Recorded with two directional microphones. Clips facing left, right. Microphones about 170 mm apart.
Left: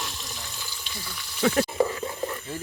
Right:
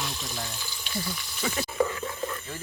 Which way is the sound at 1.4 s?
70° left (ahead or behind).